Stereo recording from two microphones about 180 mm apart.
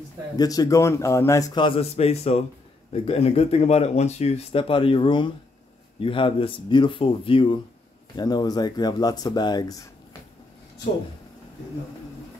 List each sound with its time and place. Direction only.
0.4 s a man's voice: 20° left (ahead or behind)